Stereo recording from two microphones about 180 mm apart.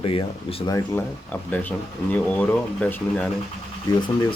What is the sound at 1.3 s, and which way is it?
Speech, 10° left (ahead or behind).